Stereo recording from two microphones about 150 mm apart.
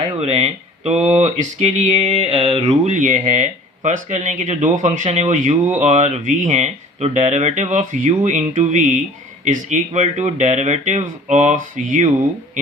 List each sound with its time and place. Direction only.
0.0 s speech: 45° right (ahead or behind)